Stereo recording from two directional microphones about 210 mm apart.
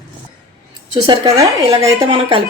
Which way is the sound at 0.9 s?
15° right (ahead or behind).